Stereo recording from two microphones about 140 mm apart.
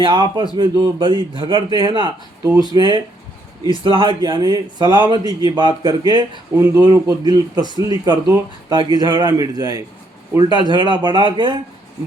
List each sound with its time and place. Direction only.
0.0 s a man's voice: 35° right (ahead or behind)